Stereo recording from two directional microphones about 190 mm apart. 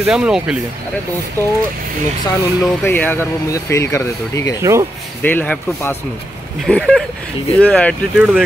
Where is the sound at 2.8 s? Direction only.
10° left (ahead or behind).